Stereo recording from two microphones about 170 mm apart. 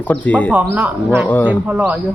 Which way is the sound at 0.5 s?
10° right (ahead or behind).